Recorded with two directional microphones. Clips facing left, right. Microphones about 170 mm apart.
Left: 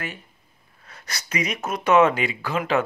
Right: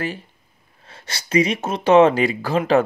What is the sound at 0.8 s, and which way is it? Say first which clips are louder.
A man's voice: right 2 dB; 30° right (ahead or behind).